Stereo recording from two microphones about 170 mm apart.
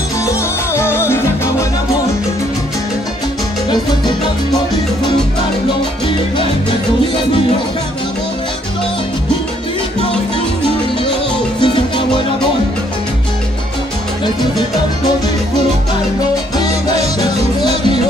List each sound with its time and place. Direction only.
0.2 s music: 15° left (ahead or behind)
11.6 s music: 30° left (ahead or behind)
16.9 s music: 40° right (ahead or behind)